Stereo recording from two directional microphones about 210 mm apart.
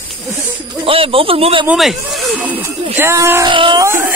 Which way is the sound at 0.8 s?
25° right (ahead or behind).